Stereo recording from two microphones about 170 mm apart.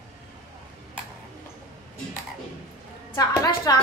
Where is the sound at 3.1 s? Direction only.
20° left (ahead or behind).